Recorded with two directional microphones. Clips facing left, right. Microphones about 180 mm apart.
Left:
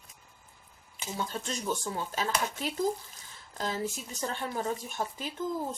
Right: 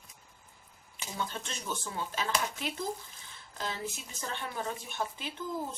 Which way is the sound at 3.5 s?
40° left (ahead or behind).